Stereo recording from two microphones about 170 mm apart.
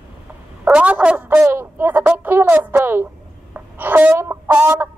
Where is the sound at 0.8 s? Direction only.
5° right (ahead or behind).